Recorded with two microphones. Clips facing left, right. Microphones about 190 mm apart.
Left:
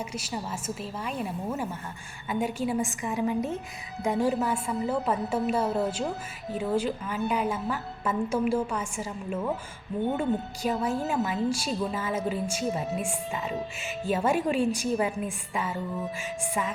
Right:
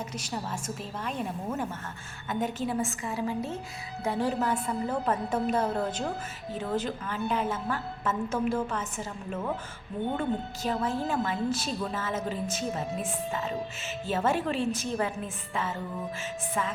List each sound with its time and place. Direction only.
0.0 s a woman's voice: 10° left (ahead or behind)